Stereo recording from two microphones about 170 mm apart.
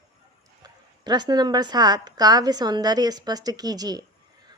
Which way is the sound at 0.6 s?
25° right (ahead or behind).